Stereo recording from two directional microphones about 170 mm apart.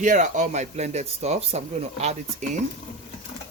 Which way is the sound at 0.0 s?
45° right (ahead or behind).